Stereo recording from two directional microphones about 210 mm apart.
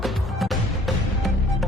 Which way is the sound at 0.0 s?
Centre (ahead or behind).